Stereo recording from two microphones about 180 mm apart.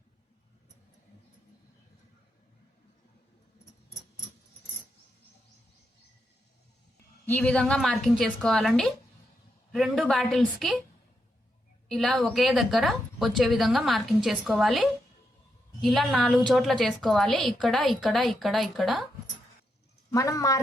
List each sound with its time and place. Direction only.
7.3 s a woman's voice: 10° left (ahead or behind)
11.9 s a woman's voice: centre (ahead or behind)
20.1 s speech: 15° left (ahead or behind)